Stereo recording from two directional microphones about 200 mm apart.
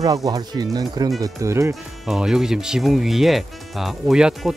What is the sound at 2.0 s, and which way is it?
Speech, centre (ahead or behind).